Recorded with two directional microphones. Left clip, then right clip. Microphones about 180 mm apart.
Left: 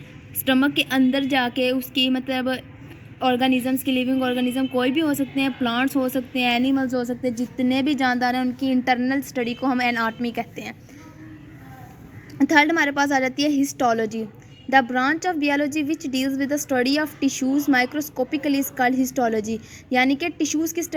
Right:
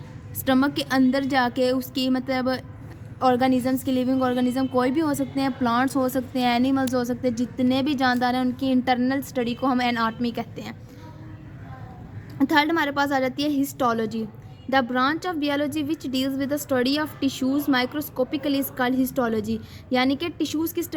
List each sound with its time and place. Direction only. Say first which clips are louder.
0.4 s a woman's voice: left 2 dB; 20° left (ahead or behind)
12.4 s a woman's voice: left 3 dB; 25° left (ahead or behind)